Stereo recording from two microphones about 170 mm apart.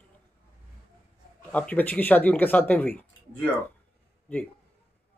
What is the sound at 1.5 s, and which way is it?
Speech, 10° left (ahead or behind).